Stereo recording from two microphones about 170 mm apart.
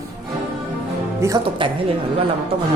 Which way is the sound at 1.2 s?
20° right (ahead or behind).